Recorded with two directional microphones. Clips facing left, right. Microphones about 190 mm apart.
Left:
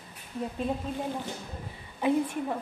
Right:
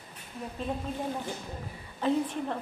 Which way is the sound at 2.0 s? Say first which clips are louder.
Left 2 dB; 10° left (ahead or behind).